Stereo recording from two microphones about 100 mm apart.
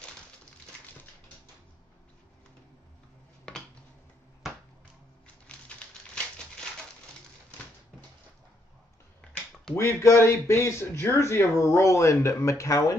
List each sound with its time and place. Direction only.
3.5 s a sound: 5° left (ahead or behind)
5.2 s typewriter: 10° left (ahead or behind)
9.8 s a man's voice: 25° left (ahead or behind)